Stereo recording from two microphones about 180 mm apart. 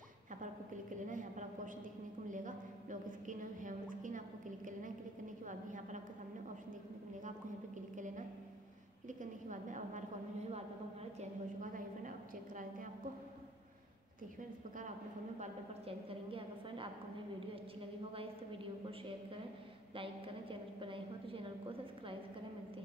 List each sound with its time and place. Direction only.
0.9 s a sound: 45° right (ahead or behind)
5.5 s a woman's voice: 45° right (ahead or behind)
7.2 s a sound: 45° right (ahead or behind)
9.2 s a woman's voice: 45° right (ahead or behind)
11.1 s a woman's voice: 45° right (ahead or behind)
16.1 s a woman's voice: 30° right (ahead or behind)
20.0 s a woman's voice: 30° right (ahead or behind)